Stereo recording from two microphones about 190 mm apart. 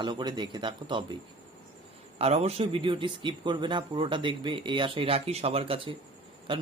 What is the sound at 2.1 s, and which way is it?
Speech, 35° right (ahead or behind).